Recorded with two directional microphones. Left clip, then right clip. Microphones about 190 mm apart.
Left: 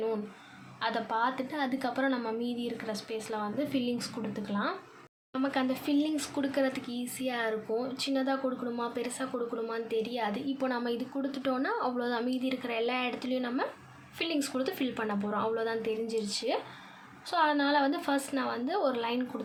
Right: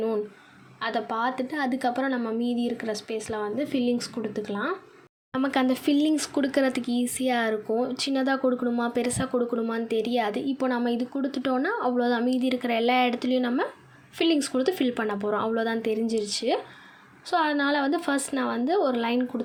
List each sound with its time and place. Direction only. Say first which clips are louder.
0.8 s a woman's voice: right 3 dB; 25° right (ahead or behind)